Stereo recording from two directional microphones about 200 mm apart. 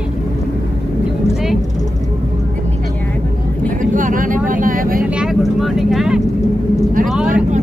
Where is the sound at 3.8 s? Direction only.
40° right (ahead or behind).